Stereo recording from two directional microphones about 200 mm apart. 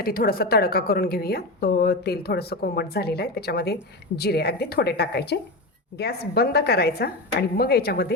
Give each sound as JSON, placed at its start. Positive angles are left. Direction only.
{"t": 0.0, "sound": "a woman's voice", "side_deg": 50}